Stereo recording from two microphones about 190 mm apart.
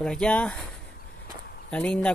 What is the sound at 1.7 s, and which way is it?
Speech, 5° left (ahead or behind).